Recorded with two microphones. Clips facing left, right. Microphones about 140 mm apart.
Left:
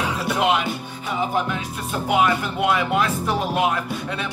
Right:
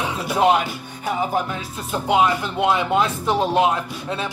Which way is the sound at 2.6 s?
25° right (ahead or behind).